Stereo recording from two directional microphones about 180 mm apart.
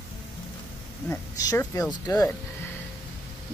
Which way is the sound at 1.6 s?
20° left (ahead or behind).